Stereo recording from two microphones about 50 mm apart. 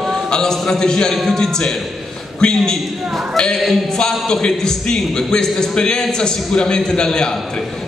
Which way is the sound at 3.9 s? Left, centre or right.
Centre.